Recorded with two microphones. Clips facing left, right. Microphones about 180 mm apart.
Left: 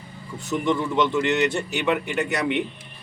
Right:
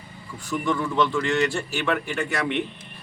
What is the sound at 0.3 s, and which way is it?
A man's voice, 20° left (ahead or behind).